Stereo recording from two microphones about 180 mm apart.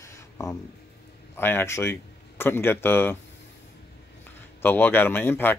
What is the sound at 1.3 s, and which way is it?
A man's voice, 10° left (ahead or behind).